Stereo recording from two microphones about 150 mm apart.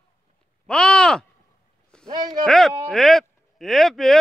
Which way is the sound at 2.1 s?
30° right (ahead or behind).